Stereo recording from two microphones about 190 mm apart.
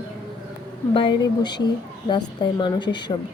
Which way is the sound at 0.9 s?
25° left (ahead or behind).